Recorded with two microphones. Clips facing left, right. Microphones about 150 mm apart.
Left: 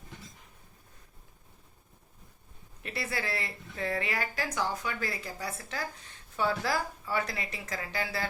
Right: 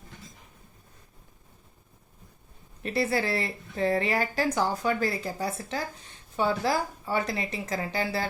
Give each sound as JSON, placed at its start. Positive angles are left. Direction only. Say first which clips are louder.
{"t": 2.8, "sound": "a woman's voice", "louder": "right 9 dB", "side_deg": -30}